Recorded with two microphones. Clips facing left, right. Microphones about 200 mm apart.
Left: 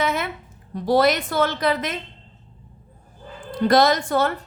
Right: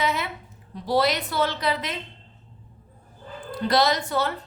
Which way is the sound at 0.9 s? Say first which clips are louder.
Left 5 dB; 50° left (ahead or behind).